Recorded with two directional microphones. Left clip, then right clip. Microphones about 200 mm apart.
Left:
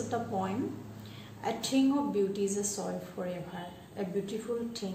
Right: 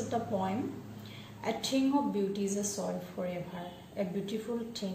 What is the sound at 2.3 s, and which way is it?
A woman's voice, 15° left (ahead or behind).